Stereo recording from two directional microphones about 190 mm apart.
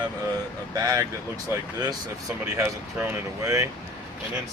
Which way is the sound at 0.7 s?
20° right (ahead or behind).